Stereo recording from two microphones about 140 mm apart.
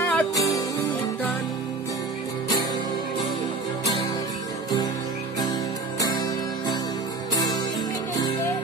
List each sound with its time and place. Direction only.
0.0 s music: 10° left (ahead or behind)
5.9 s music: 25° left (ahead or behind)